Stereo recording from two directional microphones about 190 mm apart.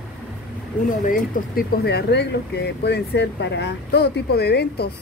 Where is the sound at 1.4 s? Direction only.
45° left (ahead or behind).